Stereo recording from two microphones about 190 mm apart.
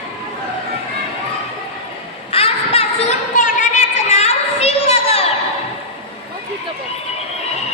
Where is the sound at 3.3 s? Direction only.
40° left (ahead or behind).